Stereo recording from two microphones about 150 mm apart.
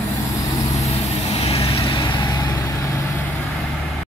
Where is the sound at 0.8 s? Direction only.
45° left (ahead or behind).